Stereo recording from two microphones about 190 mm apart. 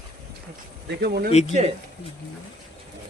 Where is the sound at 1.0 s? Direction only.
55° right (ahead or behind).